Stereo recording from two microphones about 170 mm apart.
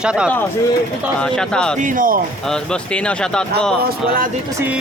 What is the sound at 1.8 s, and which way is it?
Speech, 50° right (ahead or behind).